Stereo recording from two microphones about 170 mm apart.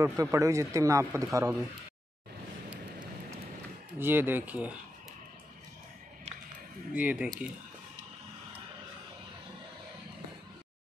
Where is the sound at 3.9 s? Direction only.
10° right (ahead or behind).